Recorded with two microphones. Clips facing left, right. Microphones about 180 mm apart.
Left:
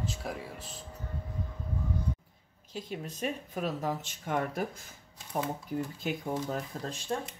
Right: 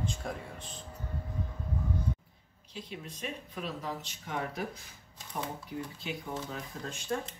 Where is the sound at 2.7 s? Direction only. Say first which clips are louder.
Left 5 dB; 45° left (ahead or behind).